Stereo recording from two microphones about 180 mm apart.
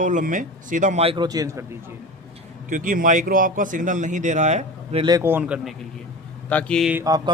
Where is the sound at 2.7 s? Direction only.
45° right (ahead or behind).